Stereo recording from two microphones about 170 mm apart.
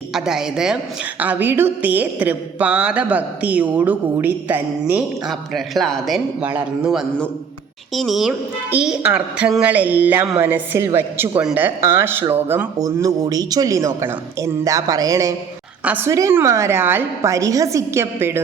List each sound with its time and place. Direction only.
0.1 s a woman's voice: 5° right (ahead or behind)